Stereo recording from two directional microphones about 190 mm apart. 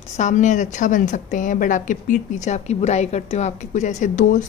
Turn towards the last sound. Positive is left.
turn(degrees=40)  # may be behind; listen again after turning